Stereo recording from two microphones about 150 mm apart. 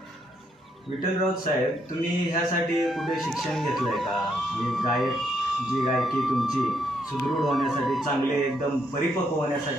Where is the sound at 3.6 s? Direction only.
Centre (ahead or behind).